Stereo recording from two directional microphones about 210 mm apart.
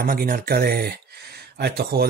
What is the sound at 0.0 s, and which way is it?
Speech, 45° right (ahead or behind).